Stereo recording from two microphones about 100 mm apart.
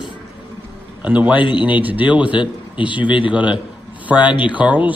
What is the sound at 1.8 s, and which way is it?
Speech, 15° right (ahead or behind).